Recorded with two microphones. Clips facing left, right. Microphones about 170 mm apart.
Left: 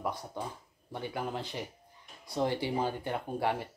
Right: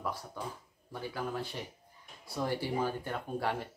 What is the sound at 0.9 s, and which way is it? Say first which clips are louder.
Speech: left 1 dB; 20° left (ahead or behind).